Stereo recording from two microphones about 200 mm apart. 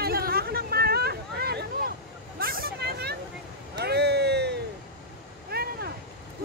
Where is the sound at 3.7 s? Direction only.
55° right (ahead or behind).